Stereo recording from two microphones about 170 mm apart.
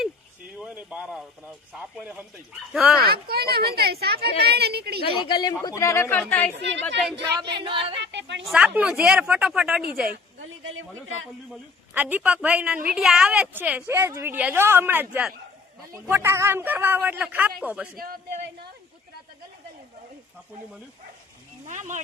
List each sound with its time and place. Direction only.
0.6 s a woman's voice: 10° right (ahead or behind)
3.0 s a woman's voice: 65° right (ahead or behind)
5.0 s a woman's voice: 30° left (ahead or behind); by 7.2 s centre (ahead or behind)
7.6 s speech: 30° right (ahead or behind)
8.0 s a sound: 90° right
8.4 s a woman's voice: 5° right (ahead or behind)
11.9 s a woman's voice: 10° right (ahead or behind)
17.9 s speech: 60° right (ahead or behind)
21.7 s speech: 45° right (ahead or behind)